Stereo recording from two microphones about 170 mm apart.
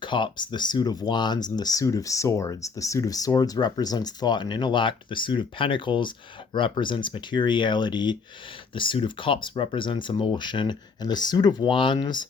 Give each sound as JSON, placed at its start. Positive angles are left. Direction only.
{"t": 0.0, "sound": "speech", "side_deg": 30}